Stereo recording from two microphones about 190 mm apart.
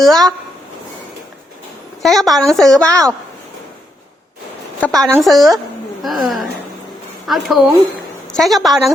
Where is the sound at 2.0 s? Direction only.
Centre (ahead or behind).